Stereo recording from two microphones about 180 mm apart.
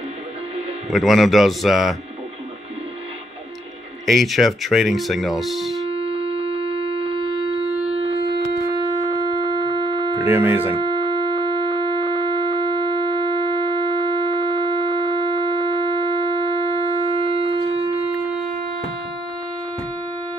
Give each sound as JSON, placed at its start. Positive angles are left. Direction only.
{"t": 0.8, "sound": "speech", "side_deg": 0}
{"t": 4.0, "sound": "speech", "side_deg": 0}
{"t": 6.0, "sound": "a sound", "side_deg": -30}
{"t": 10.1, "sound": "speech", "side_deg": -10}
{"t": 10.8, "sound": "music", "side_deg": -30}